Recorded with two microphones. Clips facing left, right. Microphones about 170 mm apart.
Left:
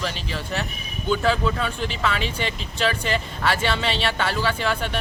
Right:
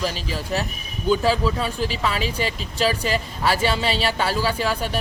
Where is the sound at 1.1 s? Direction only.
5° right (ahead or behind).